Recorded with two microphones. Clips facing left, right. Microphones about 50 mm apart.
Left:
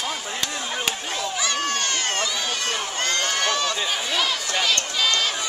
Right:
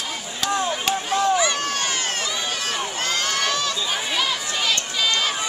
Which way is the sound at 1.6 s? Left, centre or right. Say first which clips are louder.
Even; centre.